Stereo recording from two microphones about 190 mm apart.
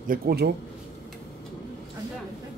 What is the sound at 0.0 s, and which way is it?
Speech, 50° right (ahead or behind).